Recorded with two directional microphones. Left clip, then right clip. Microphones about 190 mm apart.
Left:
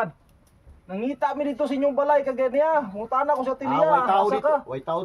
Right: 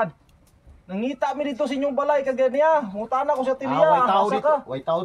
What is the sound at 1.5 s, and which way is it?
Speech, centre (ahead or behind).